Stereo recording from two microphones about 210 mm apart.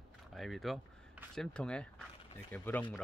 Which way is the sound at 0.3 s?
Centre (ahead or behind).